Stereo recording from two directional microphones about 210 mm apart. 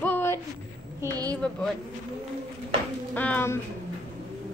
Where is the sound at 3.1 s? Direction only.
10° left (ahead or behind).